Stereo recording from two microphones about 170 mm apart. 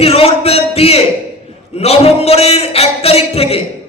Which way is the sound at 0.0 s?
35° left (ahead or behind).